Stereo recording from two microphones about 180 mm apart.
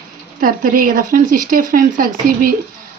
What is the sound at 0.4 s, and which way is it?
A woman's voice, 50° right (ahead or behind).